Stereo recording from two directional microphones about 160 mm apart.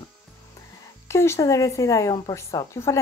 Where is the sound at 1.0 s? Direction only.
15° left (ahead or behind).